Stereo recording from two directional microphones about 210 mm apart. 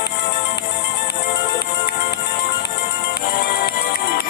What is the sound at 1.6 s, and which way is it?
Music, 50° left (ahead or behind).